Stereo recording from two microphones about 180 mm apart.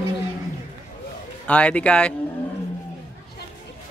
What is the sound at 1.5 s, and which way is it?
Speech, 5° left (ahead or behind).